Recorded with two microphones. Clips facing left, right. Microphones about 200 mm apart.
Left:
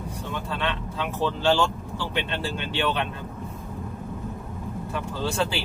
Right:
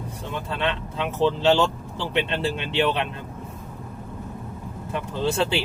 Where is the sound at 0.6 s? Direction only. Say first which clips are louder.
Right 5 dB; 20° right (ahead or behind).